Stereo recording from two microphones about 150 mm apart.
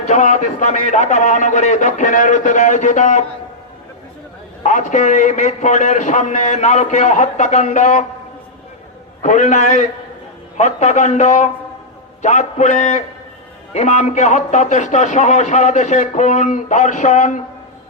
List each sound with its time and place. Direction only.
0.1 s a man's voice: 55° left (ahead or behind)
4.6 s a man's voice: 55° left (ahead or behind)
9.2 s a man's voice: 55° left (ahead or behind)